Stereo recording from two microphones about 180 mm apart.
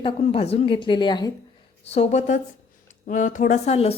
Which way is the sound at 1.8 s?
35° left (ahead or behind).